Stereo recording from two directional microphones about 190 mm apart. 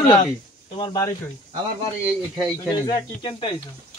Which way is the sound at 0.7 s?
25° left (ahead or behind).